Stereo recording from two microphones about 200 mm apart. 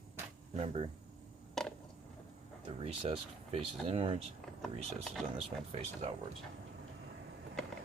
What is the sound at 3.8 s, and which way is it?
Speech, 25° right (ahead or behind).